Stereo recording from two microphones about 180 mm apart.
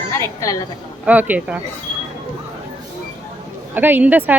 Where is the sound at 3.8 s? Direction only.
10° right (ahead or behind).